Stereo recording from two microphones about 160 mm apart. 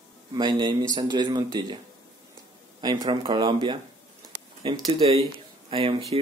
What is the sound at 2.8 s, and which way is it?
Speech, 25° right (ahead or behind).